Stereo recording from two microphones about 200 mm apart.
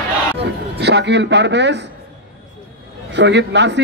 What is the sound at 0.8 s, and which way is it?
A man's voice, 55° right (ahead or behind).